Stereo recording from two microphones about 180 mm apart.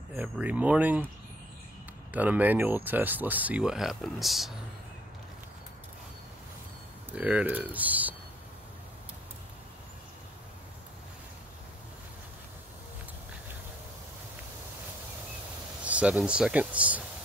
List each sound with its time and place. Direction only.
0.1 s speech: 10° right (ahead or behind)
2.1 s speech: 10° right (ahead or behind)
7.2 s speech: 10° right (ahead or behind)
15.8 s speech: 5° right (ahead or behind)